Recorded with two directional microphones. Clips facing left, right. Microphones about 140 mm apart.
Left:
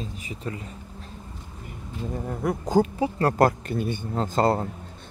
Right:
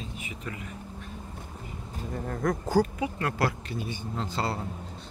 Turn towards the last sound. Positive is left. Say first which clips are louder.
# left 9 dB
turn(degrees=45)  # may be behind; listen again after turning